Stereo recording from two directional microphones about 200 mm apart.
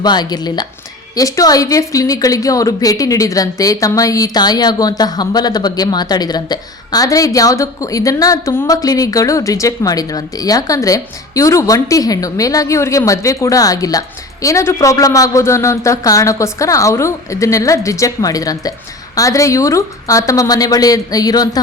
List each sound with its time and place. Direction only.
0.0 s speech: 20° left (ahead or behind)